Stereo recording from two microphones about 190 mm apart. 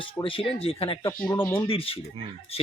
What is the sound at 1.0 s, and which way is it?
Speech, 15° left (ahead or behind).